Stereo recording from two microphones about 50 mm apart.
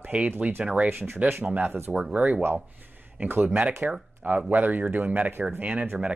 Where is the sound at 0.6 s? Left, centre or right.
Centre.